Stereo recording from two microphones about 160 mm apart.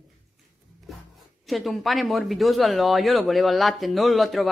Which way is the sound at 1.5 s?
Centre (ahead or behind).